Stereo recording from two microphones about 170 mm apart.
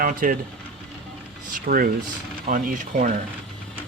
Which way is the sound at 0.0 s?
55° right (ahead or behind).